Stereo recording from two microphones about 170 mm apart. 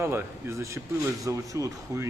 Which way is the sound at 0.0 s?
15° right (ahead or behind).